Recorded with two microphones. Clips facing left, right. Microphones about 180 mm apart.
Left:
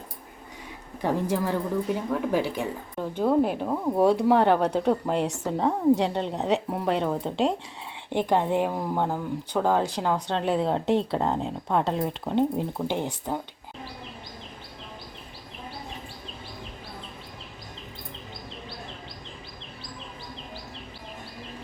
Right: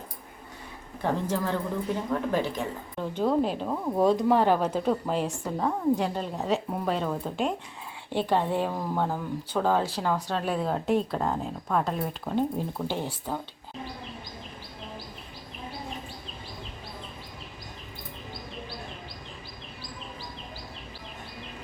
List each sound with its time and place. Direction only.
1.0 s a woman's voice: 10° left (ahead or behind)
5.5 s speech: 25° left (ahead or behind)